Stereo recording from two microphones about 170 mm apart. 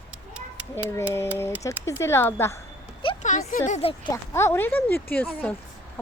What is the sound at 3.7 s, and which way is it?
Speech, 40° left (ahead or behind).